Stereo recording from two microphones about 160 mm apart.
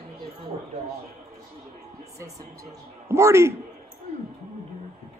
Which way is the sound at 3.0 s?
15° right (ahead or behind).